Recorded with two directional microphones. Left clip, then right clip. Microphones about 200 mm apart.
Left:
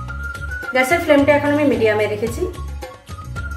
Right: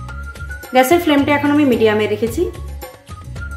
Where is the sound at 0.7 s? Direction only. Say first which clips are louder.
Right 3 dB; 50° right (ahead or behind).